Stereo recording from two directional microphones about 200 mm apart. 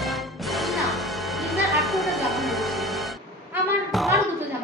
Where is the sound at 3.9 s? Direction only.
Centre (ahead or behind).